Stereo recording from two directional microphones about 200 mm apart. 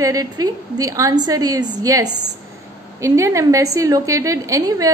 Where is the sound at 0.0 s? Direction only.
15° right (ahead or behind).